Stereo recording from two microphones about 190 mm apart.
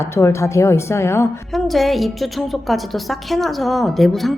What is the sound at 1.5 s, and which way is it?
A woman's voice, centre (ahead or behind).